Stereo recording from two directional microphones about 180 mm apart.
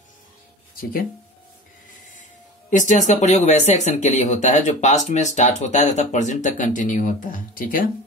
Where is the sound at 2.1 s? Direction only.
45° left (ahead or behind).